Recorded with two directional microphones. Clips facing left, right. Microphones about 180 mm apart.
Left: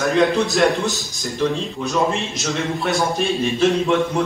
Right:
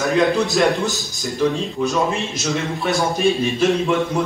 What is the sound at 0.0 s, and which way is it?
A man's voice, centre (ahead or behind).